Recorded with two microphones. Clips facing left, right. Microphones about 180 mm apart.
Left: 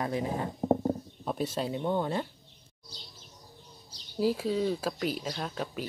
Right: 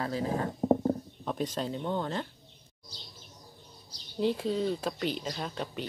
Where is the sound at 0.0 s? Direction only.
15° left (ahead or behind).